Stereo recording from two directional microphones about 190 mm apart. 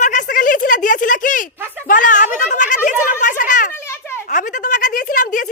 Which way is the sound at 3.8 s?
15° left (ahead or behind).